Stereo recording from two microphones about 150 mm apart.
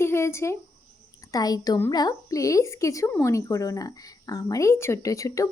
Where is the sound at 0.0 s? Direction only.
15° left (ahead or behind).